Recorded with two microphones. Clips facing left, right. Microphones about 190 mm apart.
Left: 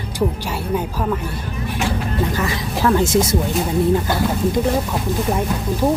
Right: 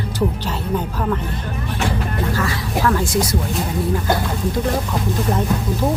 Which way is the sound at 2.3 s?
20° left (ahead or behind).